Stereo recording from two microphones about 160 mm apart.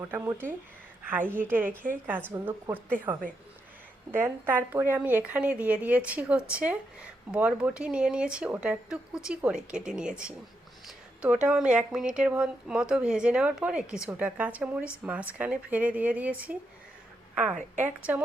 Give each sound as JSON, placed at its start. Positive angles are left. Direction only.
{"t": 0.1, "sound": "a woman's voice", "side_deg": -15}
{"t": 17.5, "sound": "a woman's voice", "side_deg": -50}
{"t": 17.8, "sound": "a woman's voice", "side_deg": -10}